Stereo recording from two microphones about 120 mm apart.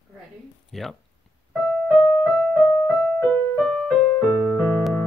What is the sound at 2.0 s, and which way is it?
Music, 5° left (ahead or behind).